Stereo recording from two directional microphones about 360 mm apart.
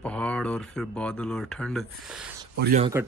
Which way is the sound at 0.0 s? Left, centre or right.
Centre.